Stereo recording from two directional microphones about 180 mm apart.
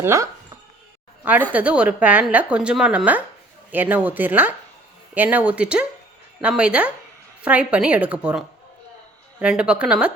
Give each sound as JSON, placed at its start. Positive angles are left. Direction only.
{"t": 0.0, "sound": "speech", "side_deg": -15}